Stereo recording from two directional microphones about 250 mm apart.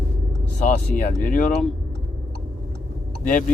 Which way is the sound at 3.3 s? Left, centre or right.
Left.